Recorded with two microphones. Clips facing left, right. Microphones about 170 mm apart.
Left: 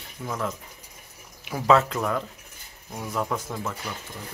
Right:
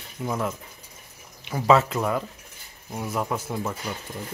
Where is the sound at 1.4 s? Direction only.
Centre (ahead or behind).